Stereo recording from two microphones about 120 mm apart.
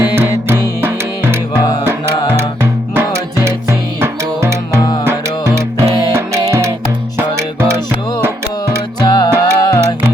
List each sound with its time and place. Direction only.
0.0 s music: 20° right (ahead or behind)
9.0 s music: 35° left (ahead or behind)